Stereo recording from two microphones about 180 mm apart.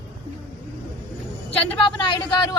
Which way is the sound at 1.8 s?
25° left (ahead or behind).